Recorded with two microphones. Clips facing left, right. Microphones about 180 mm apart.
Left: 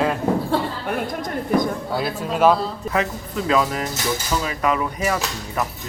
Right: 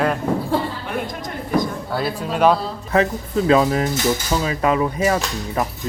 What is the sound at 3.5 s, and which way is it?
Speech, 30° right (ahead or behind).